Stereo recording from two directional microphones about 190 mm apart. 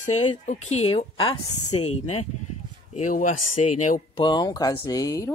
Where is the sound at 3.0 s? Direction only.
40° left (ahead or behind).